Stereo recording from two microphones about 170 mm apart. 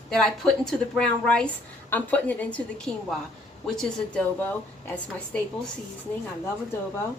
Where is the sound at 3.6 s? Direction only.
5° left (ahead or behind).